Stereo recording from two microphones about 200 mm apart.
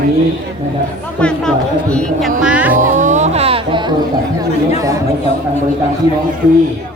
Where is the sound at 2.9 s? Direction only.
35° right (ahead or behind).